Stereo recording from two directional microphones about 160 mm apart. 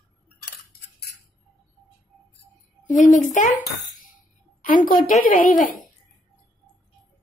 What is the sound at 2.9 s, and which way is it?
Speech, 50° left (ahead or behind).